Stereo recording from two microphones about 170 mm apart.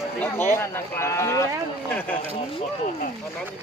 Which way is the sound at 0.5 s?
15° left (ahead or behind).